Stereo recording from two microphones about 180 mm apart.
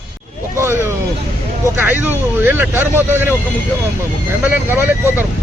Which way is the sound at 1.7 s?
10° right (ahead or behind).